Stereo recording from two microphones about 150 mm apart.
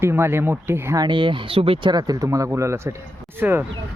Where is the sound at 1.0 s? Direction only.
30° right (ahead or behind); by 3.6 s 15° right (ahead or behind).